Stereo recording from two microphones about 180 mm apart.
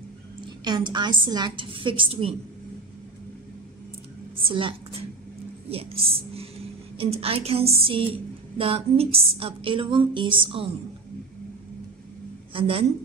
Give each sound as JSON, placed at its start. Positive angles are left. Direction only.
{"t": 0.7, "sound": "a woman's voice", "side_deg": -25}
{"t": 4.4, "sound": "a woman's voice", "side_deg": -30}
{"t": 12.5, "sound": "a woman's voice", "side_deg": -30}